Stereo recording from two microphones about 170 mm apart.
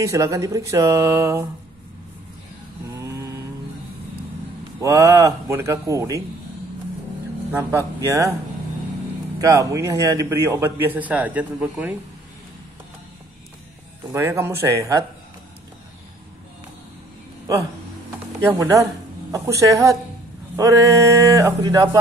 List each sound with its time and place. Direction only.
0.0 s a man's voice: 20° right (ahead or behind)
3.0 s mantra: 20° right (ahead or behind)
4.7 s a man's voice: 20° right (ahead or behind)
7.5 s a man's voice: 15° right (ahead or behind)
9.4 s a man's voice: 20° right (ahead or behind)
14.1 s a man's voice: 15° right (ahead or behind)
18.4 s speech: 20° right (ahead or behind)